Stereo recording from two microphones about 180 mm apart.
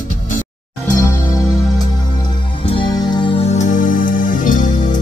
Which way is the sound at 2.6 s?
25° left (ahead or behind).